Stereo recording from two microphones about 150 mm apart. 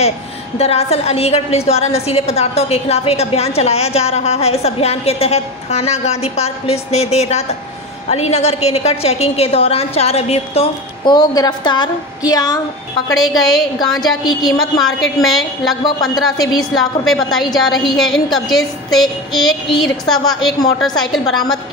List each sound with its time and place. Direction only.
0.6 s a woman's voice: 45° left (ahead or behind)
11.1 s a woman's voice: 25° left (ahead or behind)
14.6 s a woman's voice: centre (ahead or behind)
15.8 s a woman's voice: 25° left (ahead or behind)
17.0 s a woman's voice: centre (ahead or behind)
19.7 s a woman's voice: 30° left (ahead or behind)
21.1 s a woman's voice: centre (ahead or behind)